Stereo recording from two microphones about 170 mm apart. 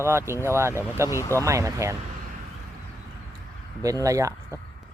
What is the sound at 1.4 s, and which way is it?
Speech, 15° right (ahead or behind).